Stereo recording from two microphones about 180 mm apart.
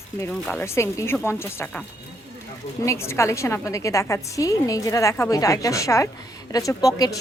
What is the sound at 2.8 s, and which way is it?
A woman's voice, 15° left (ahead or behind).